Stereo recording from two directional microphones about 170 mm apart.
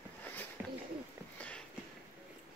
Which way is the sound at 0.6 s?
10° right (ahead or behind).